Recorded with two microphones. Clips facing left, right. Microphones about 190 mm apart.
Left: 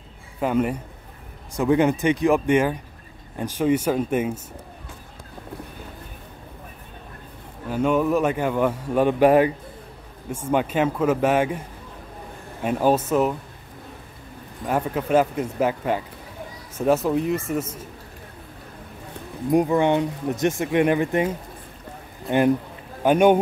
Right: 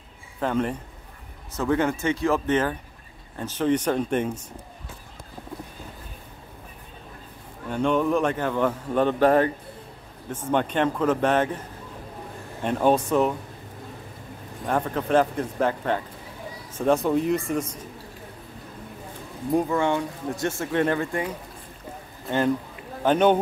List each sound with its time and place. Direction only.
0.4 s speech: 10° left (ahead or behind)
7.7 s speech: 5° left (ahead or behind)
12.6 s a man's voice: 5° left (ahead or behind)
14.7 s a man's voice: 10° left (ahead or behind)
19.5 s speech: 15° left (ahead or behind)
23.0 s speech: 10° left (ahead or behind)